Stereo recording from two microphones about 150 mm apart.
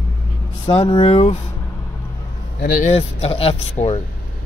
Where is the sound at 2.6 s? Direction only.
70° left (ahead or behind).